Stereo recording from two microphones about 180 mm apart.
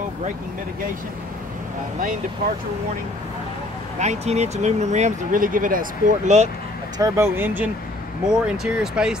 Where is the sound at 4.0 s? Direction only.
40° right (ahead or behind).